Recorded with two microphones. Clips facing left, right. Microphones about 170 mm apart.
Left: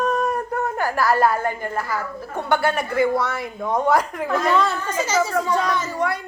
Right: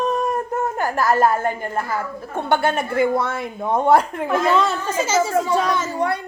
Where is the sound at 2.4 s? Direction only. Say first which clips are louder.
Right 1 dB; 25° right (ahead or behind).